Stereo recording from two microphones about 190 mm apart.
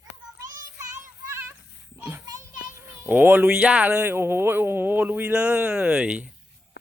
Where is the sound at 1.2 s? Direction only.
15° right (ahead or behind).